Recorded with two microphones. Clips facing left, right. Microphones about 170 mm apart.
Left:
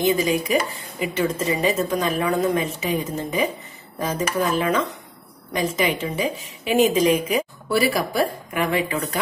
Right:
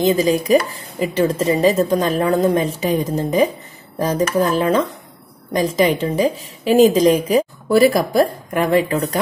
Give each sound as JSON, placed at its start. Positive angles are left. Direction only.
{"t": 0.0, "sound": "speech", "side_deg": -35}